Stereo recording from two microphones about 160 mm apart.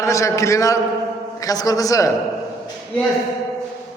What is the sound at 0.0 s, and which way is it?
A man's voice, 20° left (ahead or behind).